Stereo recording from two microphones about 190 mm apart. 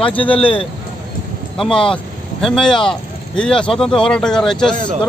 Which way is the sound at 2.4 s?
Centre (ahead or behind).